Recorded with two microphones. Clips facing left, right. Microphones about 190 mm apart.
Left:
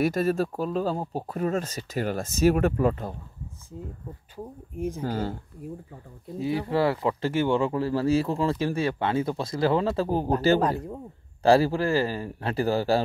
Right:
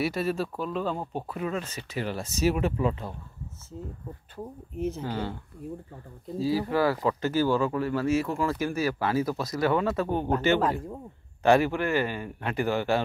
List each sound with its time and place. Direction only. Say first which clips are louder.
0.0 s speech: left 4 dB; 45° left (ahead or behind)
4.7 s speech: even; 10° left (ahead or behind)
5.0 s a man's voice: left 3 dB; 40° left (ahead or behind)
6.3 s a man's voice: even; 20° left (ahead or behind)